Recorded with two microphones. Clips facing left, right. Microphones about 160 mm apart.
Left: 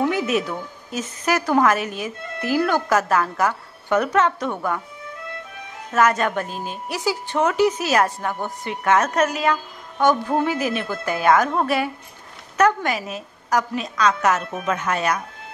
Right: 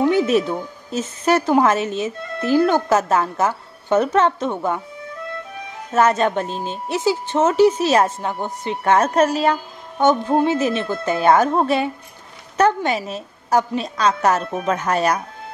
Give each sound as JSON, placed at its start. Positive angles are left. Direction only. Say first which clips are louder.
{"t": 0.1, "sound": "a woman's voice", "louder": "right 5 dB", "side_deg": -30}
{"t": 5.9, "sound": "a woman's voice", "louder": "right 2 dB", "side_deg": -25}
{"t": 8.8, "sound": "a woman's voice", "louder": "right 3 dB", "side_deg": -30}